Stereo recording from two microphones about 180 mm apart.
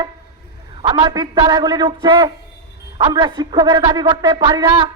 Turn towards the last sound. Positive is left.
turn(degrees=-25)  # may be behind; listen again after turning